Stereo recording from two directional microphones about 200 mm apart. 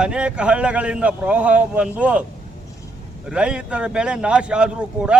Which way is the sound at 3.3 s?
5° right (ahead or behind).